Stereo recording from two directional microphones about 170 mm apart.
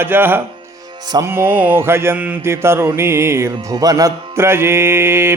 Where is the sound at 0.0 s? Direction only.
10° right (ahead or behind).